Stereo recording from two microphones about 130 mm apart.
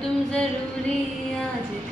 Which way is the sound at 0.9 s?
5° left (ahead or behind).